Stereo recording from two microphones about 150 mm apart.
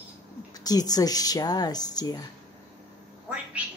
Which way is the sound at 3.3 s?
10° right (ahead or behind).